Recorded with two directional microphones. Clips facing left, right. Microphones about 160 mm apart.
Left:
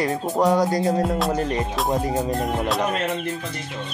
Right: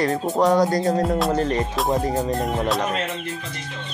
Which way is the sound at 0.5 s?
10° left (ahead or behind).